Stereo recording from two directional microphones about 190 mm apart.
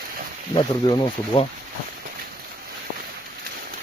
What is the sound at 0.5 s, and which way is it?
Speech, 25° left (ahead or behind).